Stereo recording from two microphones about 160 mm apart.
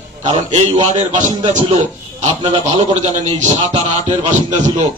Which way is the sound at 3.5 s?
30° right (ahead or behind).